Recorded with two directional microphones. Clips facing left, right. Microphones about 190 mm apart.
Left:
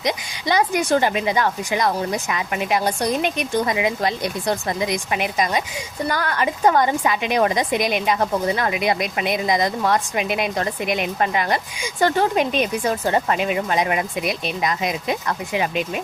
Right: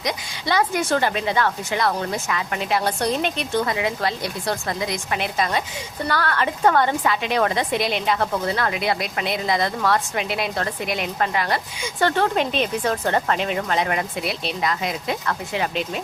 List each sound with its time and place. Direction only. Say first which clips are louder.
0.0 s a woman's voice: left 3 dB; 20° left (ahead or behind)